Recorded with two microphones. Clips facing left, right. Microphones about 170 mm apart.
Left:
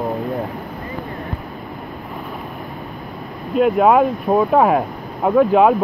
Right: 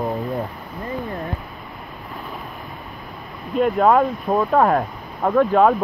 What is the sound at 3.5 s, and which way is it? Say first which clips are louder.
Speech: left 3 dB; 5° left (ahead or behind).